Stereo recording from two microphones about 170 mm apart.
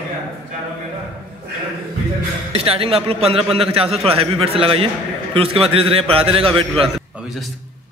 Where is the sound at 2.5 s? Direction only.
35° right (ahead or behind).